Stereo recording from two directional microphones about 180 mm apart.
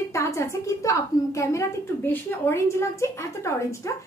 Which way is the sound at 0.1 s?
15° left (ahead or behind).